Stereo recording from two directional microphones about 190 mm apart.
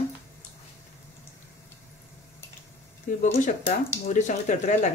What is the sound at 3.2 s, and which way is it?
Speech, 40° left (ahead or behind).